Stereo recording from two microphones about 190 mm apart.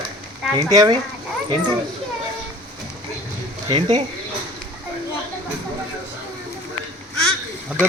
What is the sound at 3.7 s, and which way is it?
Speech, 25° right (ahead or behind).